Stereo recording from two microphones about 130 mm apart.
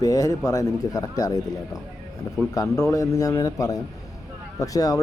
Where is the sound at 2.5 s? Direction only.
25° left (ahead or behind).